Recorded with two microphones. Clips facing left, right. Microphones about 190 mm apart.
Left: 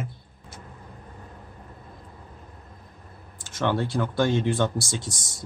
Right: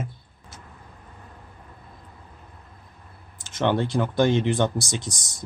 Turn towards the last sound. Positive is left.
turn(degrees=-20)  # may be behind; listen again after turning